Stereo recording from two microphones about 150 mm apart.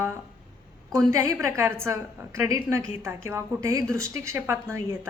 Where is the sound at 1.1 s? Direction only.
20° right (ahead or behind).